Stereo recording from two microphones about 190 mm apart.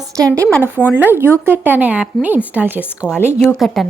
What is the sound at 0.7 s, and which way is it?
Speech, 10° right (ahead or behind).